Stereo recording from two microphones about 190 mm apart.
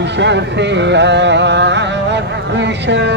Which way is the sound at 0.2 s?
65° right (ahead or behind).